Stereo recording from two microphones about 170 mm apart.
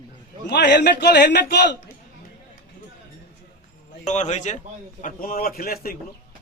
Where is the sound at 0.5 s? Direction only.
90° left.